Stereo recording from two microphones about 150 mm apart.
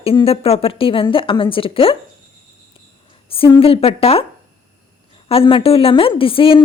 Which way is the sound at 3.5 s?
40° left (ahead or behind).